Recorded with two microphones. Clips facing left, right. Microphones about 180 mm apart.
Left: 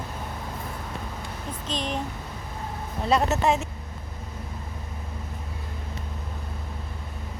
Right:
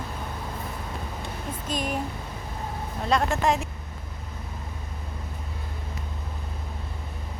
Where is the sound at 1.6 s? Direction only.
10° right (ahead or behind).